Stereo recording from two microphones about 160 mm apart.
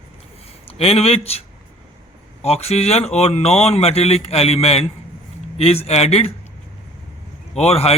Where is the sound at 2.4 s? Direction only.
40° left (ahead or behind).